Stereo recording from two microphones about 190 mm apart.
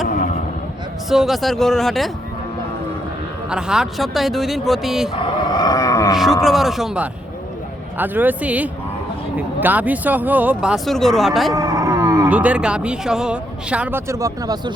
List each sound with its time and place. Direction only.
0.1 s a sound: 40° left (ahead or behind)
1.1 s speech: centre (ahead or behind)
3.5 s speech: 5° right (ahead or behind)
5.2 s a sound: 20° left (ahead or behind)
6.1 s speech: centre (ahead or behind)
11.5 s speech: 15° right (ahead or behind)